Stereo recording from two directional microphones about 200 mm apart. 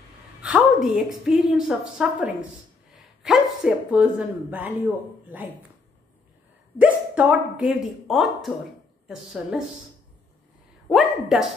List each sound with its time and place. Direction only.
0.4 s a woman's voice: 5° right (ahead or behind)
6.8 s a woman's voice: 5° right (ahead or behind)
10.9 s a sound: centre (ahead or behind)